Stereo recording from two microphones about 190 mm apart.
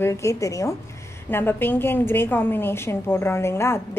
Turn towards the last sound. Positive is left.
turn(degrees=15)  # may be behind; listen again after turning